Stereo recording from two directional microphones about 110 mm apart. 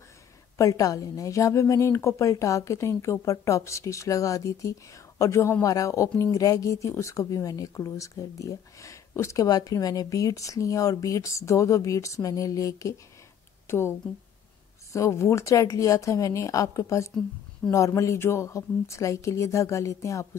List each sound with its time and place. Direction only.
0.6 s speech: 30° left (ahead or behind)